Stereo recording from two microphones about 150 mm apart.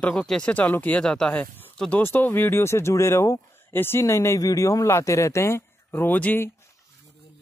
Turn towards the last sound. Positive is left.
turn(degrees=10)  # may be behind; listen again after turning